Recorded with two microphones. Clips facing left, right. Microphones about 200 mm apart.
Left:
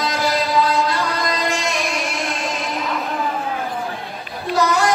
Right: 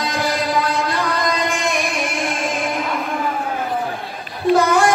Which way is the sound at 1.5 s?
55° right (ahead or behind).